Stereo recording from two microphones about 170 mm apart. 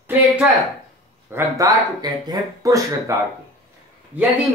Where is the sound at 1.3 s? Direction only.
20° right (ahead or behind).